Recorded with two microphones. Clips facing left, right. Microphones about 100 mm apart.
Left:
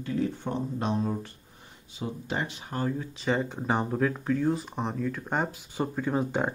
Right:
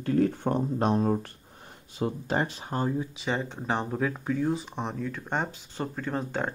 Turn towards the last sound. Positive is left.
turn(degrees=10)  # may be behind; listen again after turning